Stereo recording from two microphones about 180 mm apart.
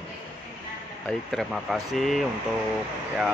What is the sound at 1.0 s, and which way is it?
Speech, centre (ahead or behind).